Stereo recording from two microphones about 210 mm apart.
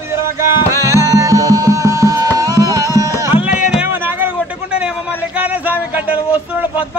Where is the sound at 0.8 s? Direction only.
15° right (ahead or behind).